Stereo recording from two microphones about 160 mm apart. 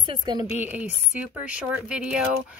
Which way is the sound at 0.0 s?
30° right (ahead or behind).